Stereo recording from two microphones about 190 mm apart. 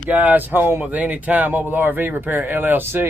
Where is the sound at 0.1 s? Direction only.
10° right (ahead or behind).